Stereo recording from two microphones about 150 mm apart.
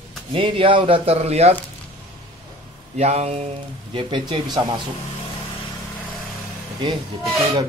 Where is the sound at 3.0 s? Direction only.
45° right (ahead or behind).